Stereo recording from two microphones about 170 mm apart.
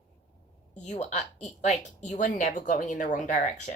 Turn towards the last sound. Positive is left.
turn(degrees=45)  # may be behind; listen again after turning